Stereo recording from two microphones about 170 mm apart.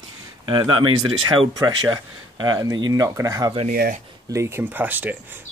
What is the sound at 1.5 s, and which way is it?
Speech, 25° right (ahead or behind).